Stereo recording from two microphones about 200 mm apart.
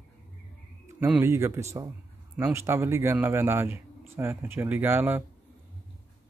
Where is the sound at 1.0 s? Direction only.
10° right (ahead or behind).